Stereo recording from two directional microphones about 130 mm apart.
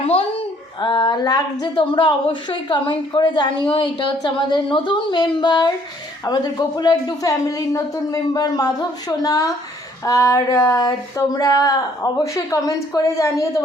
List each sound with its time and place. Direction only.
0.8 s a woman's voice: 35° left (ahead or behind)